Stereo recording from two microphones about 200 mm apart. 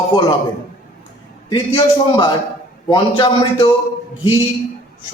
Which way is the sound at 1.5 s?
20° left (ahead or behind).